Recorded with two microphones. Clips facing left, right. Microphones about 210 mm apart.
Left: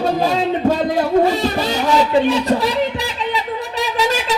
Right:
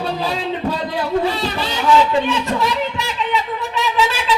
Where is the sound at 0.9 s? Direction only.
45° left (ahead or behind).